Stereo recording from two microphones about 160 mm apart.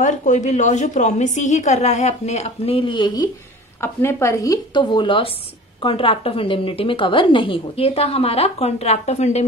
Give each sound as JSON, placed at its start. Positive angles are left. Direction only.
{"t": 0.0, "sound": "a woman's voice", "side_deg": 50}
{"t": 3.8, "sound": "a woman's voice", "side_deg": 15}